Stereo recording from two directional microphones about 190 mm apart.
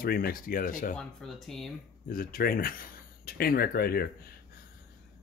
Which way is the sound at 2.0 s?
50° left (ahead or behind).